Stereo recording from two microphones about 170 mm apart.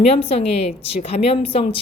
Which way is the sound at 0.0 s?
35° left (ahead or behind).